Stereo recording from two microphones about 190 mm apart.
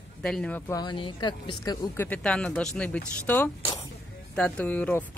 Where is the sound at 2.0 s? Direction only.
5° left (ahead or behind).